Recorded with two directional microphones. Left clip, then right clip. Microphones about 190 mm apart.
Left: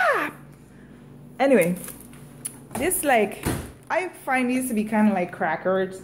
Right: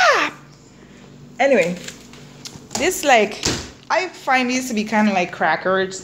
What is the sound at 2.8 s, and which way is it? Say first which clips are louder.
A woman's voice: right 6 dB; centre (ahead or behind).